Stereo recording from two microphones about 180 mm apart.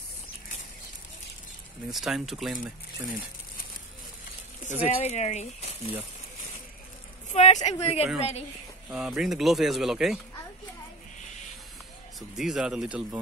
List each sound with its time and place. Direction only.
1.9 s speech: centre (ahead or behind)
5.0 s speech: 40° left (ahead or behind)
7.3 s speech: 35° left (ahead or behind)
8.8 s speech: 5° right (ahead or behind)
12.2 s speech: centre (ahead or behind)